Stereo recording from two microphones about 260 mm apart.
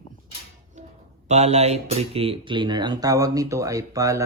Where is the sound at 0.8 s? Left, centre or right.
Right.